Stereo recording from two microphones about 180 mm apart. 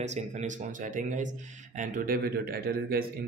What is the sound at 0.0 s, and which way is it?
Speech, 40° right (ahead or behind).